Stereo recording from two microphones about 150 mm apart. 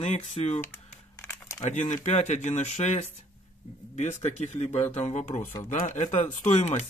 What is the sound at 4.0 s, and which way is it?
Speech, 50° left (ahead or behind).